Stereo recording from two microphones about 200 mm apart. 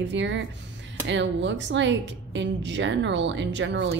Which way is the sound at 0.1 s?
65° right (ahead or behind).